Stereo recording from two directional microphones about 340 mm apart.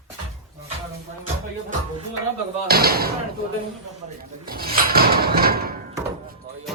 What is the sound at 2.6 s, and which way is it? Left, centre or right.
Speech, right.